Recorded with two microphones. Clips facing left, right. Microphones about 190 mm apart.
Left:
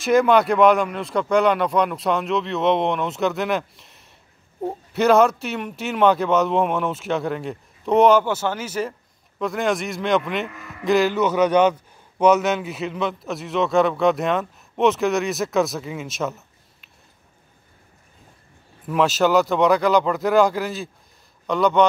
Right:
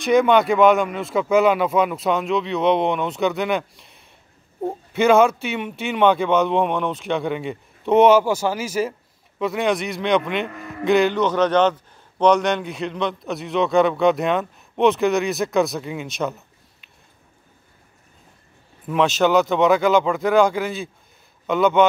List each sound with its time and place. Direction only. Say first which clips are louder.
0.0 s a man's voice: even; centre (ahead or behind)
18.9 s a man's voice: right 1 dB; centre (ahead or behind)